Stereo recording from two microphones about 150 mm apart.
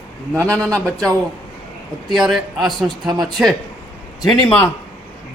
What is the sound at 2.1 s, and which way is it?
A man's voice, centre (ahead or behind).